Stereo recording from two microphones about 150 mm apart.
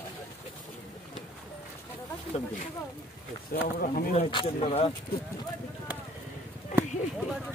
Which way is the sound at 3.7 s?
75° left (ahead or behind).